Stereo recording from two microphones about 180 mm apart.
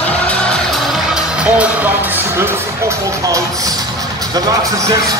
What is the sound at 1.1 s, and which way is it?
Music, 5° right (ahead or behind).